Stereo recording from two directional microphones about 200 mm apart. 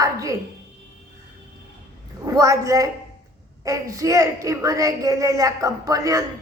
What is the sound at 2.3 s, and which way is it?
A woman's voice, 15° right (ahead or behind).